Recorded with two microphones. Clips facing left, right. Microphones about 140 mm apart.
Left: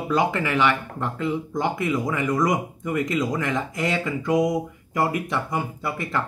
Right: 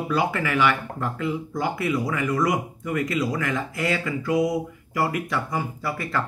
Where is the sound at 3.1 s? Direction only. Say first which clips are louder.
Left 1 dB; 20° left (ahead or behind).